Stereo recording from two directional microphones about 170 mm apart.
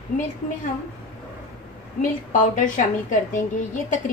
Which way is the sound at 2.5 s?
50° left (ahead or behind).